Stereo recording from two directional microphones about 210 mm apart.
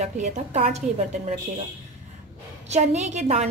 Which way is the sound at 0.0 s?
35° right (ahead or behind).